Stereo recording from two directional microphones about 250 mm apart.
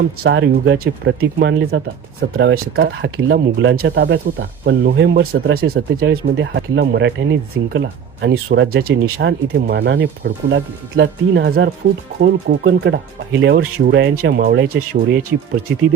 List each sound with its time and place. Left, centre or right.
0.2 s speech: right